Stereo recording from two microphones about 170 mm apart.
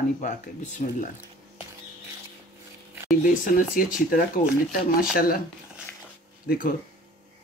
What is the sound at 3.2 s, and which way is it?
Speech, 55° left (ahead or behind).